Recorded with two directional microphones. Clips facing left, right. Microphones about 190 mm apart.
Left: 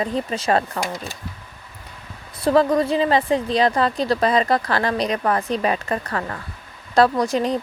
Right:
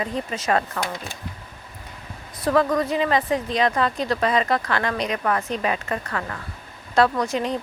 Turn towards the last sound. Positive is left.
turn(degrees=35)  # may be behind; listen again after turning